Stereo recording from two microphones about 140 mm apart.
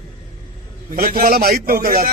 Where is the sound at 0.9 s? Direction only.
90° right.